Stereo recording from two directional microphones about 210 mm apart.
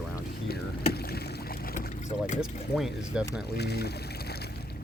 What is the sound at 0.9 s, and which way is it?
Rowboat, 50° left (ahead or behind).